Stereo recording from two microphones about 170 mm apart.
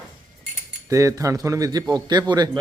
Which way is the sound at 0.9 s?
20° right (ahead or behind).